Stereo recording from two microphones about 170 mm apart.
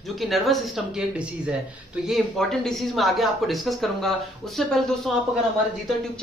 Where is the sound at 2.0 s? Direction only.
Centre (ahead or behind).